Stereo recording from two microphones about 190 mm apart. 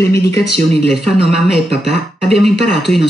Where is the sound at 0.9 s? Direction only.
30° right (ahead or behind).